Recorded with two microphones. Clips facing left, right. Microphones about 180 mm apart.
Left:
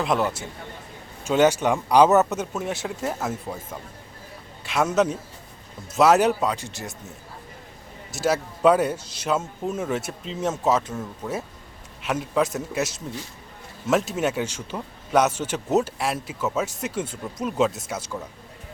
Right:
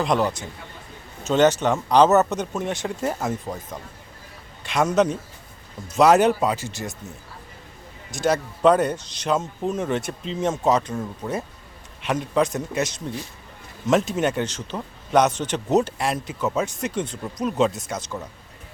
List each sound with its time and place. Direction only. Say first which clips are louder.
0.0 s speech: right 2 dB; 5° left (ahead or behind)
4.6 s speech: right 2 dB; 5° left (ahead or behind)
8.1 s speech: right 1 dB; 5° left (ahead or behind)
12.0 s speech: right 2 dB; 5° left (ahead or behind)